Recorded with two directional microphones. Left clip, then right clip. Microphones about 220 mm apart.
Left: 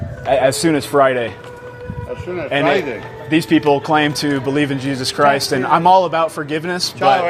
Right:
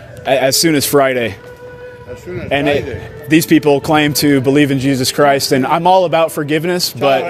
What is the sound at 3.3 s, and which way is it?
Speech, 60° right (ahead or behind).